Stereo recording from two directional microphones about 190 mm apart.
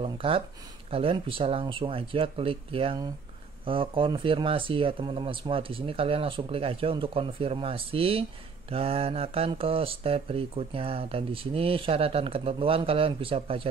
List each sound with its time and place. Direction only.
0.0 s speech: 30° right (ahead or behind)